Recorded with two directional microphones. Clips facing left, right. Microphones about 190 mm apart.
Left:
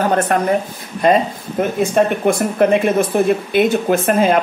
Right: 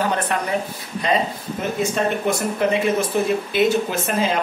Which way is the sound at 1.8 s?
55° left (ahead or behind).